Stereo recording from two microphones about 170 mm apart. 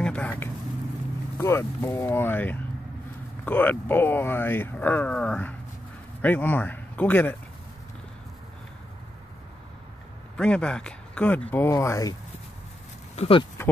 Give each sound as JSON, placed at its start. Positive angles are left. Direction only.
{"t": 0.0, "sound": "vehicle", "side_deg": 5}
{"t": 1.4, "sound": "speech", "side_deg": 15}
{"t": 10.3, "sound": "speech", "side_deg": 5}
{"t": 13.1, "sound": "speech", "side_deg": 35}